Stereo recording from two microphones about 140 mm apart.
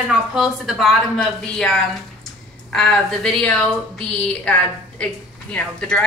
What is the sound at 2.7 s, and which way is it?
A woman's voice, 5° left (ahead or behind).